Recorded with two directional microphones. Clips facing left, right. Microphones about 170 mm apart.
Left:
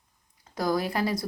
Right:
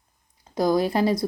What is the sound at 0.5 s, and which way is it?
Speech, 20° right (ahead or behind).